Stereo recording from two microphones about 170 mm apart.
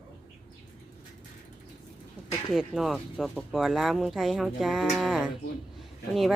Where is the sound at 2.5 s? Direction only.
Centre (ahead or behind).